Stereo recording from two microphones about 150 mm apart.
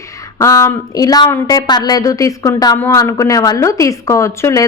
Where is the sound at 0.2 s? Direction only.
20° left (ahead or behind).